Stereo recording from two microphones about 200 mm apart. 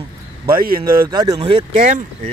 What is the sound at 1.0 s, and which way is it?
Speech, 20° right (ahead or behind).